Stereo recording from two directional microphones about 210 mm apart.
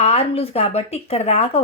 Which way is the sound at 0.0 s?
30° left (ahead or behind).